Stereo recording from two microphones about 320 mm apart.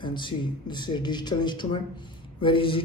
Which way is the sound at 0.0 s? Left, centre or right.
Centre.